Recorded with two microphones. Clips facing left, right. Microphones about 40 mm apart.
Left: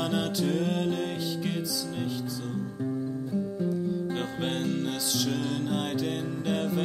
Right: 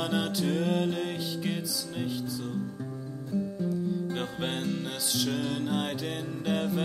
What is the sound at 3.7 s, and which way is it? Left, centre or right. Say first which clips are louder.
Music: left 1 dB; centre.